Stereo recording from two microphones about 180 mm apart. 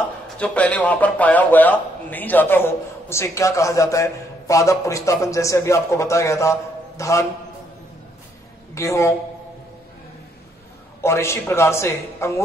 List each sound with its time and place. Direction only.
0.4 s a man's voice: 5° left (ahead or behind)
8.7 s a man's voice: 15° left (ahead or behind)
11.0 s a man's voice: 15° left (ahead or behind)